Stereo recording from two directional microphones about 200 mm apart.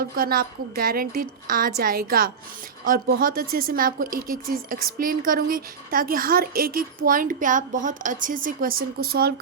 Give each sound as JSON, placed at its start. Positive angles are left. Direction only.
{"t": 0.0, "sound": "a woman's voice", "side_deg": -45}